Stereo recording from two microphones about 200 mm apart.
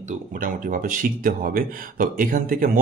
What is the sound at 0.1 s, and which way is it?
Speech, 40° right (ahead or behind).